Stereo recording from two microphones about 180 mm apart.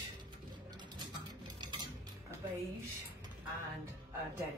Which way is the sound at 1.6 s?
25° right (ahead or behind).